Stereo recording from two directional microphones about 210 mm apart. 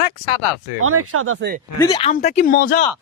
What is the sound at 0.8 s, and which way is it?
Speech, 85° right.